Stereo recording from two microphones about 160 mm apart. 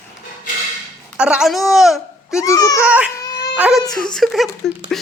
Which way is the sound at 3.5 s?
10° right (ahead or behind).